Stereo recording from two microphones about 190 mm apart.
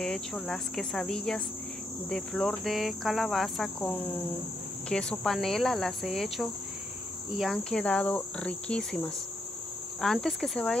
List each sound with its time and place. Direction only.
0.0 s cricket: 5° left (ahead or behind)